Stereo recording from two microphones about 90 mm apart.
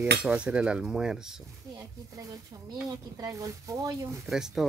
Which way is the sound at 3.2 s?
40° right (ahead or behind).